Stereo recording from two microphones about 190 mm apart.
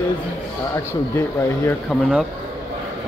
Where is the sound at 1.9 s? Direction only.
5° right (ahead or behind).